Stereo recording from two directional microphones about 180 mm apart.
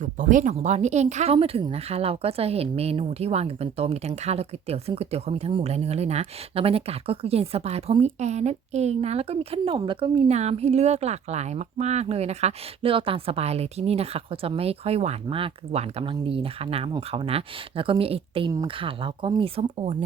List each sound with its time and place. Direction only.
0.0 s speech: 45° right (ahead or behind)